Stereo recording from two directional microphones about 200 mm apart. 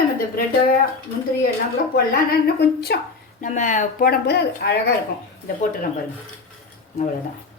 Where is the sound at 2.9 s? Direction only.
55° left (ahead or behind).